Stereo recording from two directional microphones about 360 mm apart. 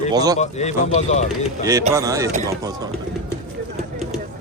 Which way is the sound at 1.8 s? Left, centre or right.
Centre.